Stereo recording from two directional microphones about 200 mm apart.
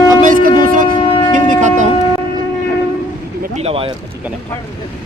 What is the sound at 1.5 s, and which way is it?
Speech, 40° right (ahead or behind).